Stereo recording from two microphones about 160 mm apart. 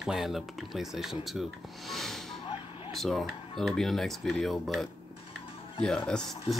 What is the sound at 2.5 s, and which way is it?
Vehicle, 30° left (ahead or behind).